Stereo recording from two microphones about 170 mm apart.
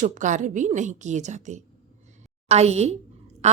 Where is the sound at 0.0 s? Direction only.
45° right (ahead or behind).